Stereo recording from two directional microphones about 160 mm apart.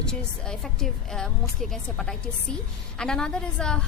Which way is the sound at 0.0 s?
5° left (ahead or behind).